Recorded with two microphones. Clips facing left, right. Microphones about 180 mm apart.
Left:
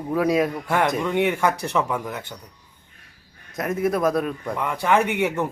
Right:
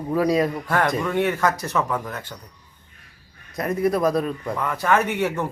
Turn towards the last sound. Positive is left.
turn(degrees=10)  # may be behind; listen again after turning